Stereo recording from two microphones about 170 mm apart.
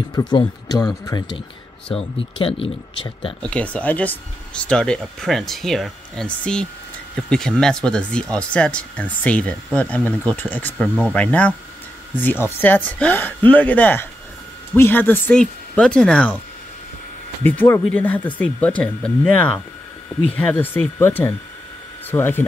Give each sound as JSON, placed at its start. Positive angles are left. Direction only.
{"t": 0.1, "sound": "speech", "side_deg": 25}
{"t": 2.0, "sound": "speech", "side_deg": 35}
{"t": 3.4, "sound": "speech", "side_deg": 5}
{"t": 17.4, "sound": "speech", "side_deg": 10}